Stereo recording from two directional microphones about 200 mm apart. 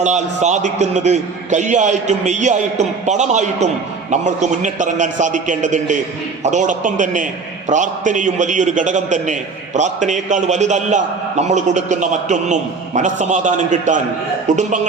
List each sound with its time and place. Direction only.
0.0 s a man's voice: 35° right (ahead or behind)